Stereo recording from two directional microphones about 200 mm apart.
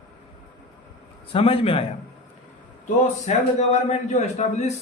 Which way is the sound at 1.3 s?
30° left (ahead or behind).